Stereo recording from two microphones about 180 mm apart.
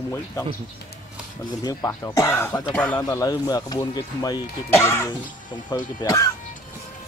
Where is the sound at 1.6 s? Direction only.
20° left (ahead or behind).